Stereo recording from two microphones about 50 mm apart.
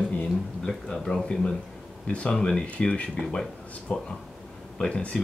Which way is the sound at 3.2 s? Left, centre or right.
Centre.